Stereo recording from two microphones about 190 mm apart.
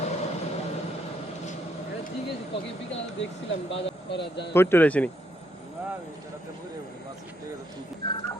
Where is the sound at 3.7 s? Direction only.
65° left (ahead or behind).